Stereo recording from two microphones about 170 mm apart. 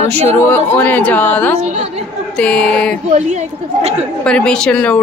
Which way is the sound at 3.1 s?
40° right (ahead or behind).